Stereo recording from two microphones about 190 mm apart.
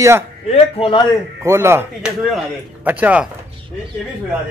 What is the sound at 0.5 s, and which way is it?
Speech, 30° left (ahead or behind).